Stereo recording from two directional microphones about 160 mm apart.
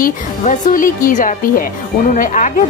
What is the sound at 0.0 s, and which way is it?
A woman's voice, 60° left (ahead or behind).